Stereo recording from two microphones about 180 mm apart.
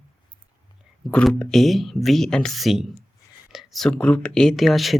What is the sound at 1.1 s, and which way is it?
Speech, 5° left (ahead or behind).